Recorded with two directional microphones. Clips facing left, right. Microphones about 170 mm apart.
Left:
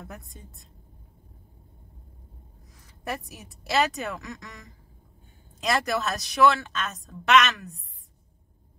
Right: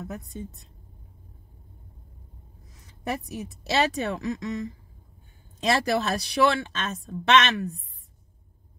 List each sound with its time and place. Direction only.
3.0 s a woman's voice: 25° right (ahead or behind)